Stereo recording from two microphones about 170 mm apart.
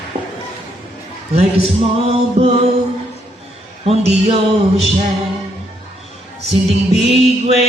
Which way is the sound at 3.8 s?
35° right (ahead or behind).